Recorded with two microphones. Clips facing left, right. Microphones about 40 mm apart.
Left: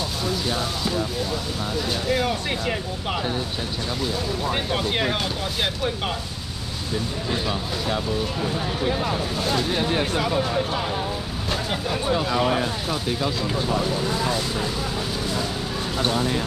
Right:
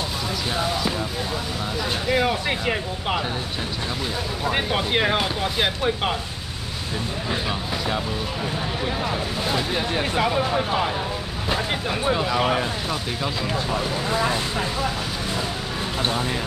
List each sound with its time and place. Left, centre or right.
2.0 s speech: centre
4.5 s speech: centre
9.5 s speech: centre
11.5 s vehicle: centre
12.4 s speech: right
14.0 s speech: right